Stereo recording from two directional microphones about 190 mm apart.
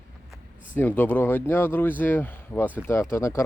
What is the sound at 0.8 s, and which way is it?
Speech, 10° left (ahead or behind).